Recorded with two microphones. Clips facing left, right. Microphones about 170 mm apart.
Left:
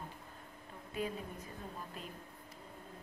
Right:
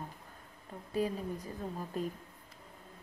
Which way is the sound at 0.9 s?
35° right (ahead or behind).